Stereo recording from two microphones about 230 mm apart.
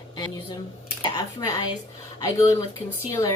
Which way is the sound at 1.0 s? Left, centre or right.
Centre.